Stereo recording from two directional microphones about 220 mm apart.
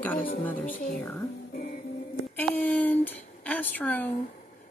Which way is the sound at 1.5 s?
40° left (ahead or behind).